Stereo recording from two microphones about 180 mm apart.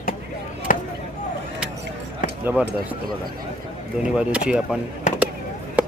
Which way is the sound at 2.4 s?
10° right (ahead or behind).